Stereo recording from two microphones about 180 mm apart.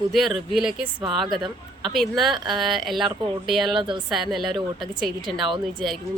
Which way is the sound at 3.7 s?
25° right (ahead or behind).